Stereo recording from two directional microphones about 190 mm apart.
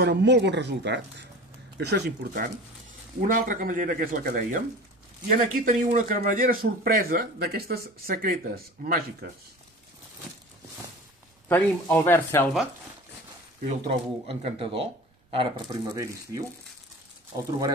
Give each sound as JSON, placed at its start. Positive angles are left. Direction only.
{"t": 0.0, "sound": "a man's voice", "side_deg": -65}
{"t": 11.4, "sound": "speech", "side_deg": 10}
{"t": 13.7, "sound": "speech", "side_deg": -30}
{"t": 15.3, "sound": "speech", "side_deg": -20}